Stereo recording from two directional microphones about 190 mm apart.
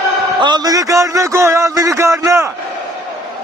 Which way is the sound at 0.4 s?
20° right (ahead or behind).